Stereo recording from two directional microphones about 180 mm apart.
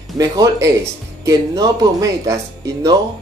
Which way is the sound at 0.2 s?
20° right (ahead or behind).